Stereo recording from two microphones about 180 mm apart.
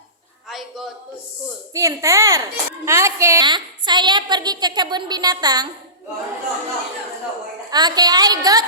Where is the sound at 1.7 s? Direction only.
15° right (ahead or behind).